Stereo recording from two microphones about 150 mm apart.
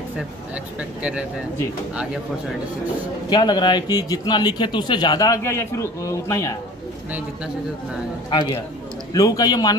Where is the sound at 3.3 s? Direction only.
30° left (ahead or behind).